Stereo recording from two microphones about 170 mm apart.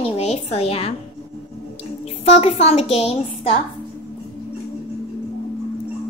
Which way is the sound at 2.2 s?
40° left (ahead or behind).